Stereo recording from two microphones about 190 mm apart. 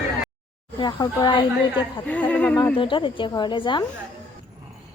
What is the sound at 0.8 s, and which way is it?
Speech, 20° left (ahead or behind).